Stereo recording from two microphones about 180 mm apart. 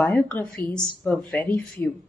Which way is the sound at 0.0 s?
10° left (ahead or behind).